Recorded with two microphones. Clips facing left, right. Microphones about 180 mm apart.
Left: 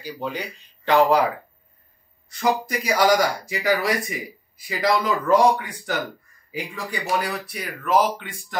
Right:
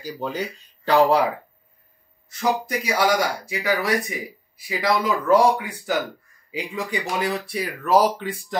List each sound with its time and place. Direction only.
0.0 s speech: 40° right (ahead or behind)
2.8 s speech: centre (ahead or behind)
6.5 s speech: 20° right (ahead or behind); by 8.5 s 35° right (ahead or behind)